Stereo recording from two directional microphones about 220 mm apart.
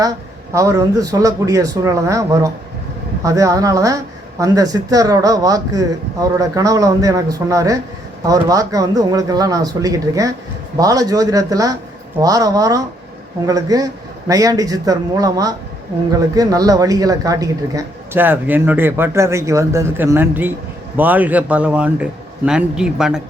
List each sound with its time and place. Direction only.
0.5 s a man's voice: 15° right (ahead or behind)